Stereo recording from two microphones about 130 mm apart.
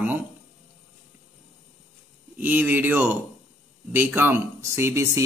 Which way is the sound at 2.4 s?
15° right (ahead or behind).